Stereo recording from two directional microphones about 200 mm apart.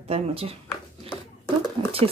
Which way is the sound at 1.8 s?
25° right (ahead or behind).